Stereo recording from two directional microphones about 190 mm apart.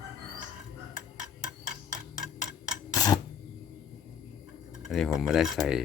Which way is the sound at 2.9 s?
20° left (ahead or behind).